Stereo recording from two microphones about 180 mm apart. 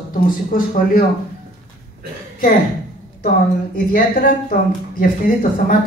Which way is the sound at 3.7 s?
50° left (ahead or behind).